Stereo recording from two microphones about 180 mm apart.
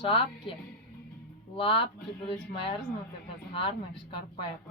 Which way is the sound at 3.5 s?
30° left (ahead or behind).